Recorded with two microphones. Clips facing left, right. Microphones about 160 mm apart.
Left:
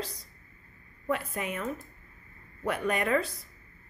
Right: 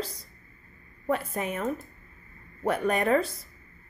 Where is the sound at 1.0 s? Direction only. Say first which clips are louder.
Right 3 dB; 35° right (ahead or behind).